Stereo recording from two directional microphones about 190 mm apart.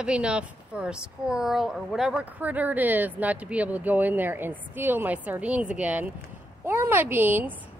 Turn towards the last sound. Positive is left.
turn(degrees=-10)  # may be behind; listen again after turning